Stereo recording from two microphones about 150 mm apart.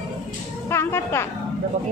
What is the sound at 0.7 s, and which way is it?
Speech, 15° left (ahead or behind).